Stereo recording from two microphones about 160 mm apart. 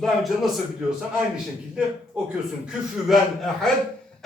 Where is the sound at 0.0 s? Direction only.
Centre (ahead or behind).